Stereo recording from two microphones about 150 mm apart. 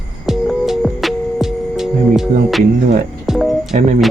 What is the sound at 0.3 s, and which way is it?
Music, centre (ahead or behind).